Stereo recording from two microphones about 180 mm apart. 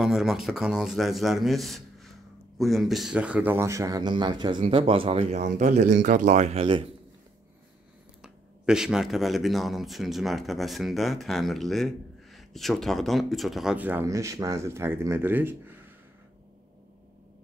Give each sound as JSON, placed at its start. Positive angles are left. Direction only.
{"t": 0.0, "sound": "speech", "side_deg": -5}
{"t": 8.2, "sound": "speech", "side_deg": -5}